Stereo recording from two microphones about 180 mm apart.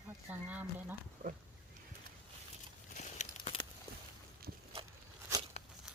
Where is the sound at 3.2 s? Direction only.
40° left (ahead or behind).